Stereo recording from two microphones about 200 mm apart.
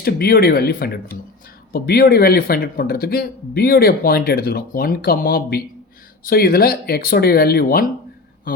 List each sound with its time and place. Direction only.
0.0 s speech: 50° left (ahead or behind)